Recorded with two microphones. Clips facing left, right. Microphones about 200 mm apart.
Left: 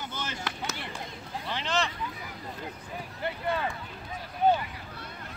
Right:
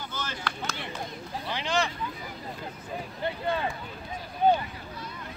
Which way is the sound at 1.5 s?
Centre (ahead or behind).